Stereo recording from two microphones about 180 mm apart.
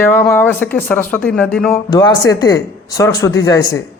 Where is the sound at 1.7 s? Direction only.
20° left (ahead or behind).